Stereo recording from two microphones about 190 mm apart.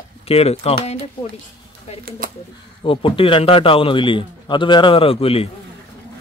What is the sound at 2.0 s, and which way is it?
Speech, 50° right (ahead or behind).